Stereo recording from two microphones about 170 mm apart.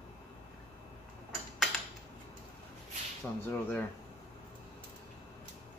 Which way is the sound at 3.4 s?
10° left (ahead or behind).